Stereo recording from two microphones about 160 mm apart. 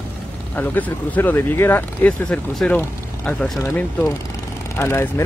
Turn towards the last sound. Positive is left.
turn(degrees=15)  # may be behind; listen again after turning